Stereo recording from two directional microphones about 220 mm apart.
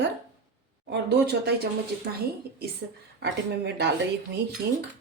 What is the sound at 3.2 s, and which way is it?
Speech, 50° right (ahead or behind).